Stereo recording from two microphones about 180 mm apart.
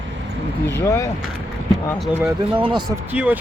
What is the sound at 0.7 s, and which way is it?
Speech, 15° left (ahead or behind).